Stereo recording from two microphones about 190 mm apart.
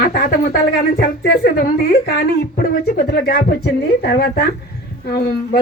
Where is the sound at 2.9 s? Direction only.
55° left (ahead or behind).